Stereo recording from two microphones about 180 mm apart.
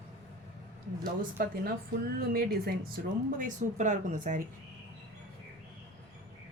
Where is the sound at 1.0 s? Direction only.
55° right (ahead or behind).